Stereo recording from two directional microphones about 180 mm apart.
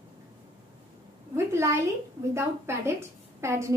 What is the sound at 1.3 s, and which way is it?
A woman's voice, 15° right (ahead or behind).